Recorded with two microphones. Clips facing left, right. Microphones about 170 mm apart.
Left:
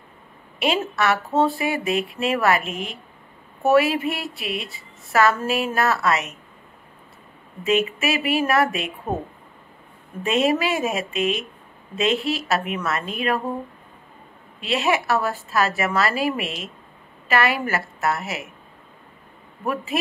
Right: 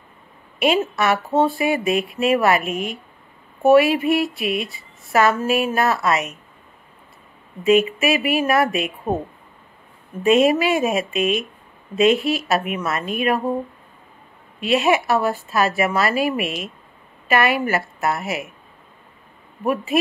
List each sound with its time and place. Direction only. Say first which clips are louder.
0.6 s speech: right 3 dB; 15° right (ahead or behind)
7.6 s speech: right 5 dB; 30° left (ahead or behind)
8.4 s speech: even; 15° right (ahead or behind)
10.2 s speech: right 5 dB; 15° right (ahead or behind)
14.6 s speech: right 4 dB; 15° right (ahead or behind)
19.6 s speech: right 4 dB; 15° right (ahead or behind)